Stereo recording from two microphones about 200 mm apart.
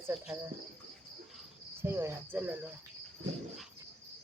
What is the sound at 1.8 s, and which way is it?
Speech, 15° right (ahead or behind).